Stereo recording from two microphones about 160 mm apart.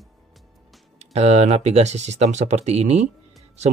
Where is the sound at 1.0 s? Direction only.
45° right (ahead or behind).